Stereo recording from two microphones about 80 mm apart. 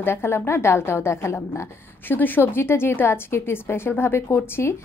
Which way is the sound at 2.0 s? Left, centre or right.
Left.